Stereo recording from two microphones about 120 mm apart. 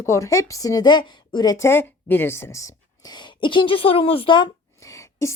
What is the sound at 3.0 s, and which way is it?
Speech, 40° left (ahead or behind).